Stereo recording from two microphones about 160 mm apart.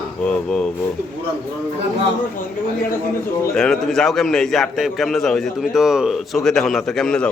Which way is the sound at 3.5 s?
5° left (ahead or behind).